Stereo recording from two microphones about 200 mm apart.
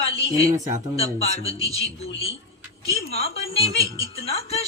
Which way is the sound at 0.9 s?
30° left (ahead or behind).